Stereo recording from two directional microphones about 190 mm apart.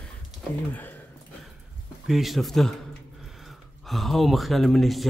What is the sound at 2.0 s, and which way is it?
Speech, centre (ahead or behind).